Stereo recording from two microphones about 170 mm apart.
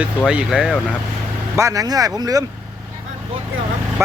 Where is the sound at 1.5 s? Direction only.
20° right (ahead or behind).